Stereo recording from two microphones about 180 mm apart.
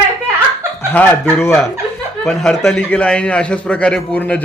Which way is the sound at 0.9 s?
10° left (ahead or behind).